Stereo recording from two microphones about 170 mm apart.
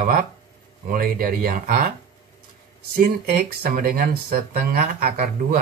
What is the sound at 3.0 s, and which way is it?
Speech, 65° right (ahead or behind).